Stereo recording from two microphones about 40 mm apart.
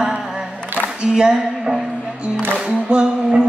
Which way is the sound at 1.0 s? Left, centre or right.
Right.